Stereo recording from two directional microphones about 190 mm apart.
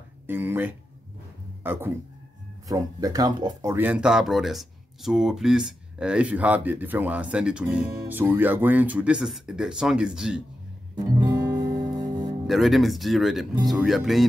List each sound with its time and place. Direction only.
0.3 s speech: 10° right (ahead or behind)
3.7 s speech: 10° right (ahead or behind)
11.0 s music: 20° right (ahead or behind)
12.4 s speech: centre (ahead or behind)